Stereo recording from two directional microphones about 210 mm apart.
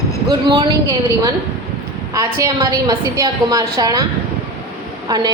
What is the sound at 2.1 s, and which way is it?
A woman's voice, 15° right (ahead or behind).